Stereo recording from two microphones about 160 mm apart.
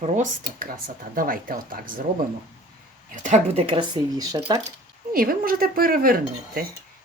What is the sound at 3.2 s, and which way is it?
Speech, 40° right (ahead or behind).